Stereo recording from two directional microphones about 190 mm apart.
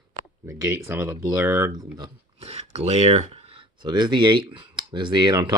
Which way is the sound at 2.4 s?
35° right (ahead or behind).